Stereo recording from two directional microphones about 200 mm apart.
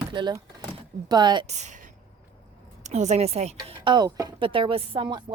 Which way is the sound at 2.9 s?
35° right (ahead or behind).